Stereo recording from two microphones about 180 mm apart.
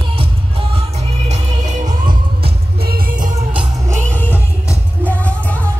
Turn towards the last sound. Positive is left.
turn(degrees=10)  # may be behind; listen again after turning